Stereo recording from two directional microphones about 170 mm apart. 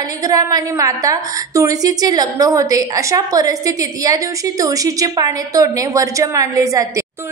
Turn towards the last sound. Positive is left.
turn(degrees=-20)  # may be behind; listen again after turning